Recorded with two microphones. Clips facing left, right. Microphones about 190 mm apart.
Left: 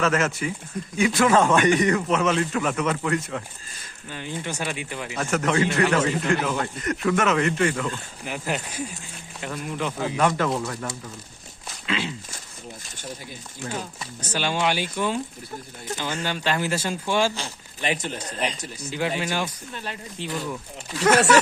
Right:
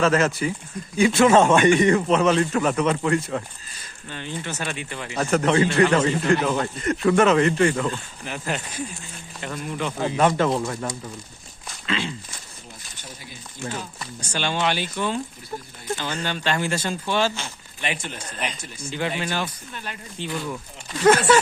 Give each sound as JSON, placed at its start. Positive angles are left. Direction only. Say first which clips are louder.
{"t": 0.0, "sound": "a man's voice", "louder": "right 3 dB", "side_deg": -35}
{"t": 4.1, "sound": "speech", "louder": "even", "side_deg": 10}
{"t": 5.1, "sound": "a man's voice", "louder": "right 4 dB", "side_deg": -35}
{"t": 8.2, "sound": "speech", "louder": "left 1 dB", "side_deg": 10}
{"t": 10.2, "sound": "a man's voice", "louder": "right 3 dB", "side_deg": -25}
{"t": 11.7, "sound": "walk", "louder": "right 1 dB", "side_deg": 5}
{"t": 14.3, "sound": "speech", "louder": "even", "side_deg": 5}
{"t": 17.3, "sound": "speech", "louder": "left 1 dB", "side_deg": 35}
{"t": 18.9, "sound": "speech", "louder": "even", "side_deg": 5}
{"t": 19.7, "sound": "speech", "louder": "left 2 dB", "side_deg": 30}
{"t": 20.2, "sound": "speech", "louder": "right 2 dB", "side_deg": 5}